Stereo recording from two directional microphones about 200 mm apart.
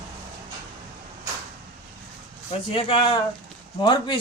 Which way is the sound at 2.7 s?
25° left (ahead or behind).